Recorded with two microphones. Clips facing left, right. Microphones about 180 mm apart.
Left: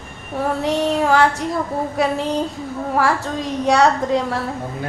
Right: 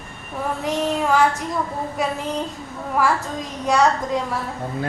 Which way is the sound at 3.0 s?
70° left (ahead or behind).